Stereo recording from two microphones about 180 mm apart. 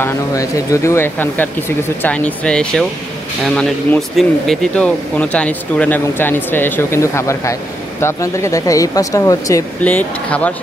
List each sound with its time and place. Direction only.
0.0 s speech: 20° left (ahead or behind)